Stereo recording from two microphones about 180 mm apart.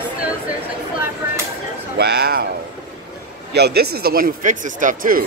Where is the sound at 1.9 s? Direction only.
65° right (ahead or behind).